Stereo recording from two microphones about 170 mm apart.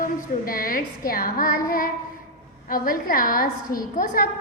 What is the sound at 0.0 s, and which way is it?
A woman's voice, 55° left (ahead or behind).